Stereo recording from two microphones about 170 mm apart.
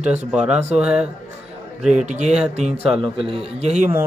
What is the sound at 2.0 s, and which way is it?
Speech, 45° right (ahead or behind).